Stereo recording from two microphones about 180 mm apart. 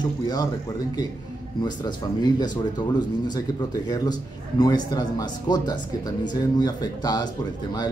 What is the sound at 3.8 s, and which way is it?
Speech, 20° left (ahead or behind).